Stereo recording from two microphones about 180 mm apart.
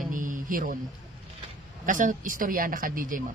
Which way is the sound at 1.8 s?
50° right (ahead or behind).